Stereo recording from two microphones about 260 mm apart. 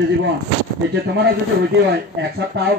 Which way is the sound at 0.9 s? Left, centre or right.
Right.